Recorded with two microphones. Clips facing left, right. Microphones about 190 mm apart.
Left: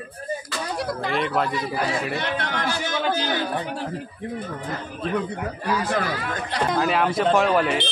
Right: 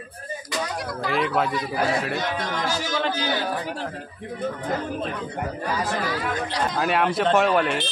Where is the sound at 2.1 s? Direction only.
65° left (ahead or behind).